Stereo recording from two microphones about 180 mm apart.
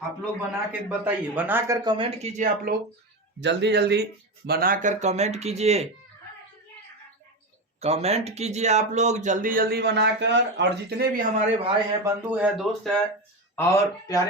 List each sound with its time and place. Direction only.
0.7 s speech: 10° right (ahead or behind); by 2.5 s 35° right (ahead or behind)
3.4 s speech: 75° right (ahead or behind); by 5.9 s 35° right (ahead or behind)
7.8 s speech: 35° right (ahead or behind); by 11.3 s 60° right (ahead or behind)
11.3 s speech: 30° right (ahead or behind)
12.0 s speech: 10° right (ahead or behind)
13.6 s speech: 15° left (ahead or behind)